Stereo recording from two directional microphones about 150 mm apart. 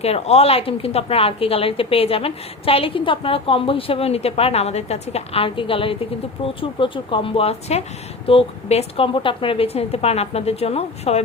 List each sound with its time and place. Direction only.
0.0 s a woman's voice: 45° left (ahead or behind)